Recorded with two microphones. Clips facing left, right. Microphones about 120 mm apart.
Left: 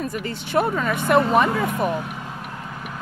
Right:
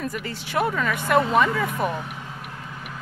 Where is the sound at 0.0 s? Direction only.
25° left (ahead or behind).